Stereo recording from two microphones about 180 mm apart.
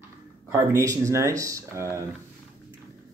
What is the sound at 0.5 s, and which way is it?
Speech, 15° right (ahead or behind).